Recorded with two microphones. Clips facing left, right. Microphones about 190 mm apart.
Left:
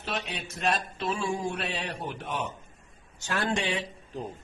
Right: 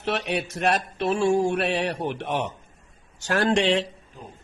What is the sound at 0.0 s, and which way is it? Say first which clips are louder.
A man's voice: right 8 dB; 75° right (ahead or behind).